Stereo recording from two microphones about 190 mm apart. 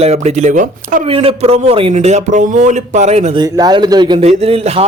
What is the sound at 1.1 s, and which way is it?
A man's voice, 30° right (ahead or behind).